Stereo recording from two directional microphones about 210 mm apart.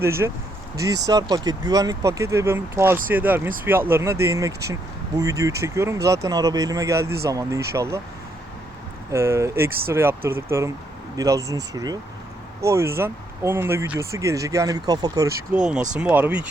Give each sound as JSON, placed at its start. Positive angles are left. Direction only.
{"t": 0.0, "sound": "speech", "side_deg": -10}
{"t": 9.1, "sound": "speech", "side_deg": -15}
{"t": 16.0, "sound": "speech", "side_deg": -5}